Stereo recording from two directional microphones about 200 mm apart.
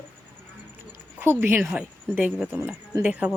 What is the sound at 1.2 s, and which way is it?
A woman's voice, 10° right (ahead or behind).